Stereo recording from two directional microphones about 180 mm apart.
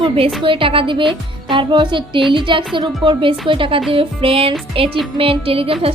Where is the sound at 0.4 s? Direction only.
30° right (ahead or behind).